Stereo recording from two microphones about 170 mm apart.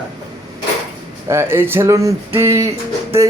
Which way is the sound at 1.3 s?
15° right (ahead or behind).